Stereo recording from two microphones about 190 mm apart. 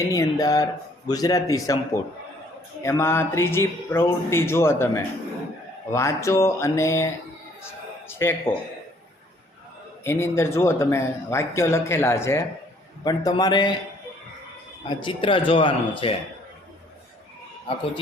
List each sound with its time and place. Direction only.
0.1 s speech: 20° left (ahead or behind)
10.0 s speech: 15° left (ahead or behind)
14.8 s speech: 25° left (ahead or behind)